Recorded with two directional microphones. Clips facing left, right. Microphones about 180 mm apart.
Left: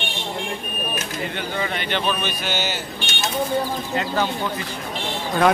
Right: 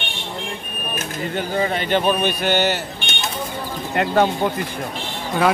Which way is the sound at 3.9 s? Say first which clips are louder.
Right 7 dB; 60° right (ahead or behind).